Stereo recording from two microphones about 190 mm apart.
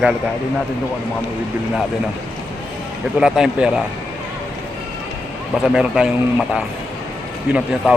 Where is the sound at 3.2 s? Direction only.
5° right (ahead or behind).